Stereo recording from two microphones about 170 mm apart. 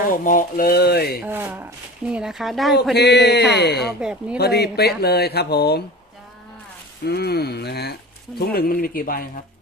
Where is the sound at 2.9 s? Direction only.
75° left (ahead or behind).